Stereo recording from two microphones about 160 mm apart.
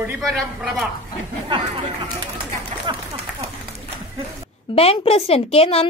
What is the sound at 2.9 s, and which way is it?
Speech, 30° right (ahead or behind).